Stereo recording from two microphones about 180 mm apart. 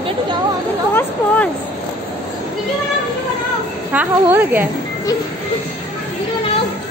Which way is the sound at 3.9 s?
10° right (ahead or behind).